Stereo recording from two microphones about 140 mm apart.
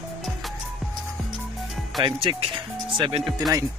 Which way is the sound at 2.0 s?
35° right (ahead or behind).